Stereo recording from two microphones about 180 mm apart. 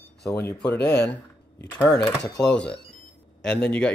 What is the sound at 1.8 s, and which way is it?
Speech, 5° left (ahead or behind).